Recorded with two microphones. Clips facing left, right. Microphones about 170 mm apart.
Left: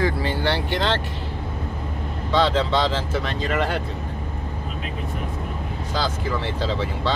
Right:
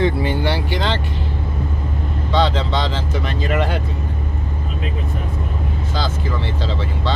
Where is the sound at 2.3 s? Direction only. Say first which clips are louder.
Even; 5° left (ahead or behind).